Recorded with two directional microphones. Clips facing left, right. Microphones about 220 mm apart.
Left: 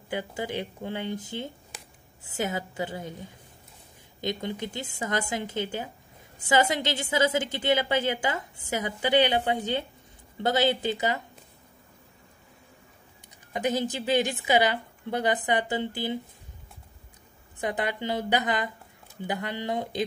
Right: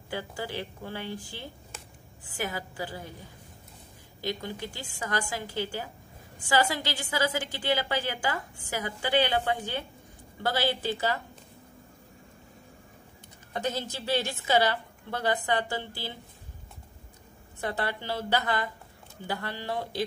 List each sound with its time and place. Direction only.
0.1 s a woman's voice: 20° left (ahead or behind)
13.5 s a woman's voice: 15° left (ahead or behind)
17.6 s a woman's voice: 15° left (ahead or behind)